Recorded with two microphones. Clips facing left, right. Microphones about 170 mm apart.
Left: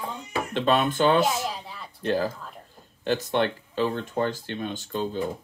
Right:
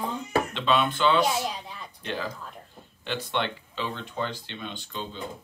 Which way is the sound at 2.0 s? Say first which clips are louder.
Left 8 dB; 40° left (ahead or behind).